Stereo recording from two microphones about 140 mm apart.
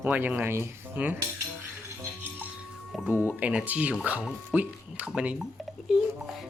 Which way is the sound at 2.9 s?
5° right (ahead or behind).